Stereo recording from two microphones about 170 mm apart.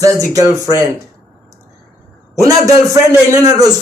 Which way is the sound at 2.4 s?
20° right (ahead or behind).